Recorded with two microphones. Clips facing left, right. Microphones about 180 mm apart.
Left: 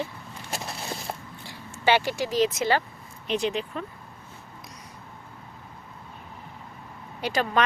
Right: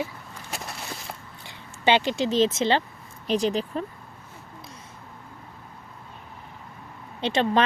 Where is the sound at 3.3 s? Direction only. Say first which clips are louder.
Right 3 dB; 35° right (ahead or behind).